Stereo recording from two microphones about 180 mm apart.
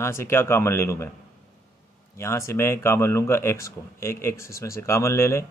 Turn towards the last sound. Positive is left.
turn(degrees=15)  # may be behind; listen again after turning